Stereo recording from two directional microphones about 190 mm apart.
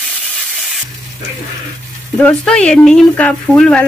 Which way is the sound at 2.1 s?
5° left (ahead or behind).